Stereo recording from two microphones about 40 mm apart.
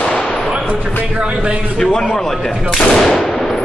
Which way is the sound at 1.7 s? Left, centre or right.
Centre.